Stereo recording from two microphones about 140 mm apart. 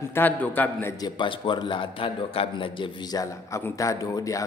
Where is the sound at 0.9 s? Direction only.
30° left (ahead or behind).